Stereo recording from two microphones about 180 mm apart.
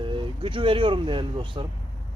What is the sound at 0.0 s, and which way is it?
Speech, 30° right (ahead or behind).